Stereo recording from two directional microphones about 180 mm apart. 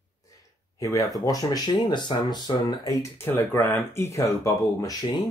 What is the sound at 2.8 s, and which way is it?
Speech, 15° left (ahead or behind).